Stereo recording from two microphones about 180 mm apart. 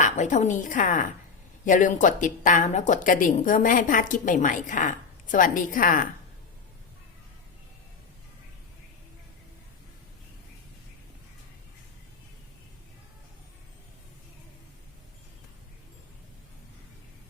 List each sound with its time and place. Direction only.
0.0 s a woman's voice: 45° left (ahead or behind)